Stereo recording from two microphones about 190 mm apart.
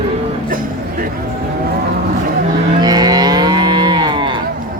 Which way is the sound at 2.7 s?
20° right (ahead or behind).